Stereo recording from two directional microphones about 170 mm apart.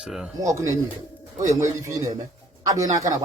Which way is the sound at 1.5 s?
20° right (ahead or behind).